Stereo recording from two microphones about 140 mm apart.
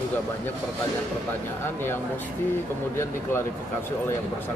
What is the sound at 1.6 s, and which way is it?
A man's voice, 15° left (ahead or behind).